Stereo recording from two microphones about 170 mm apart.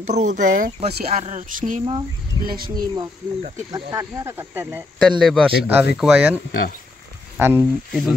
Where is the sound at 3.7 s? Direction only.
15° right (ahead or behind).